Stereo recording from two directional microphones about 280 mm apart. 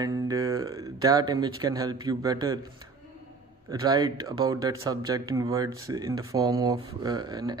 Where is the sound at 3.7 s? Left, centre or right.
Centre.